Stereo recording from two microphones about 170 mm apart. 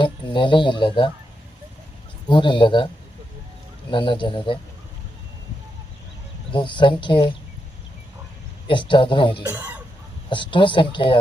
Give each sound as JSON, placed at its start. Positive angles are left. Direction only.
{"t": 0.0, "sound": "speech", "side_deg": 30}
{"t": 2.2, "sound": "speech", "side_deg": 30}
{"t": 3.9, "sound": "speech", "side_deg": 30}
{"t": 6.5, "sound": "speech", "side_deg": 30}
{"t": 8.6, "sound": "speech", "side_deg": 30}